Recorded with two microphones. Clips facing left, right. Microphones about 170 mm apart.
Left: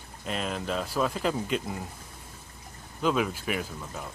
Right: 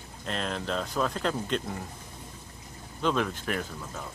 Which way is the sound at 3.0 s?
5° left (ahead or behind).